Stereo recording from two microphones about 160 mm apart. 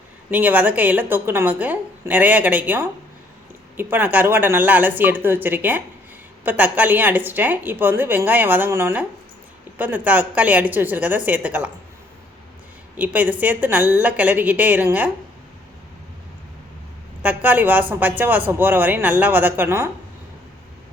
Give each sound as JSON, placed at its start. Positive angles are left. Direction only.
{"t": 0.3, "sound": "a woman's voice", "side_deg": -10}
{"t": 13.0, "sound": "a woman's voice", "side_deg": -10}
{"t": 17.2, "sound": "a woman's voice", "side_deg": -10}